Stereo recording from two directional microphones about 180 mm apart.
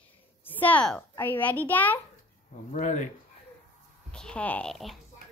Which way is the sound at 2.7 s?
45° left (ahead or behind).